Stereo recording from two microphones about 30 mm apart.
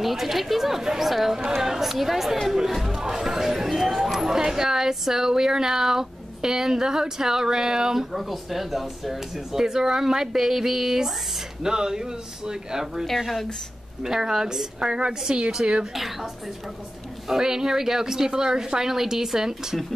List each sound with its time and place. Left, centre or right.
0.0 s speech: centre
2.9 s speech: centre
11.6 s speech: right
14.0 s speech: centre
15.8 s speech: centre
17.3 s speech: centre